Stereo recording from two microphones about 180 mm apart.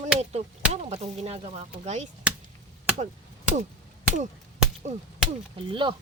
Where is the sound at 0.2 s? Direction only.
35° right (ahead or behind).